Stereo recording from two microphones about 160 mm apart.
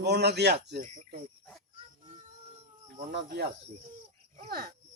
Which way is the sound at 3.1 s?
90° right.